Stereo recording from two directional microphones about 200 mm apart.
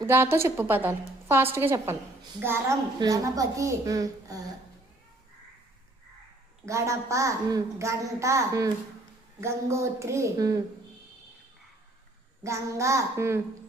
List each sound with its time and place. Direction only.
0.0 s a woman's voice: 10° right (ahead or behind)
6.7 s a woman's voice: 15° right (ahead or behind)
12.4 s a woman's voice: 15° right (ahead or behind)